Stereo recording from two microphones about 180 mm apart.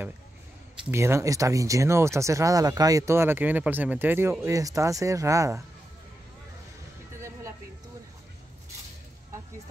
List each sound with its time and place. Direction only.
0.9 s speech: 15° right (ahead or behind)
7.2 s music: 15° right (ahead or behind)